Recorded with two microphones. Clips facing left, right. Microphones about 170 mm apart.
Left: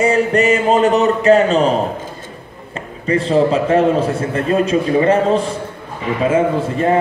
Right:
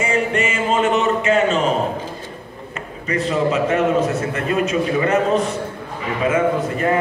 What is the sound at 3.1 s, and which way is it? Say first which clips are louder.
A man's voice: left 5 dB; 30° left (ahead or behind).